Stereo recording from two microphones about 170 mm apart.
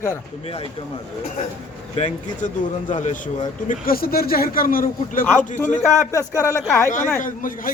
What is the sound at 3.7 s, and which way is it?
A man's voice, 60° left (ahead or behind).